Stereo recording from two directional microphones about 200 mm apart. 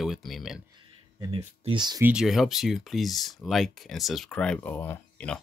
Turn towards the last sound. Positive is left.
turn(degrees=10)  # may be behind; listen again after turning